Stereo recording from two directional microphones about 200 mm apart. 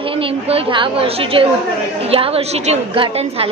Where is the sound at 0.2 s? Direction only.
30° right (ahead or behind).